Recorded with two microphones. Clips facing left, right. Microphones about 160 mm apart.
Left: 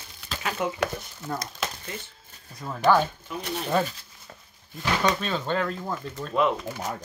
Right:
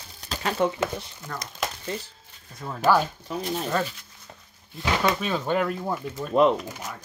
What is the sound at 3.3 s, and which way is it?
Speech, 35° right (ahead or behind).